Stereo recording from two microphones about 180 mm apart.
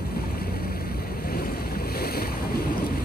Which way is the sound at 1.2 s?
55° left (ahead or behind).